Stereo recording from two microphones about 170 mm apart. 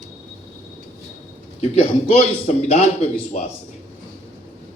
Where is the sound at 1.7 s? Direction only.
40° left (ahead or behind).